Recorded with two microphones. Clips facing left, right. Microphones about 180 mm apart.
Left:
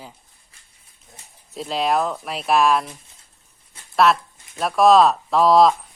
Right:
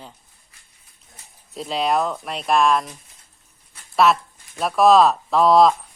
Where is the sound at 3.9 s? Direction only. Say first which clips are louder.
Even; centre (ahead or behind).